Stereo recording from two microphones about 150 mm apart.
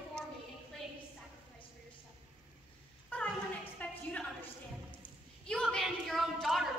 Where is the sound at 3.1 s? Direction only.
10° left (ahead or behind).